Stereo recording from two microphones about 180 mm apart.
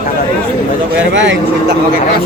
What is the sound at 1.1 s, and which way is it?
Speech, 85° right.